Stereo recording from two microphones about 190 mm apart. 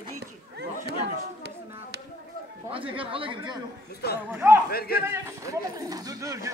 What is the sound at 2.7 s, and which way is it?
Speech, 30° right (ahead or behind).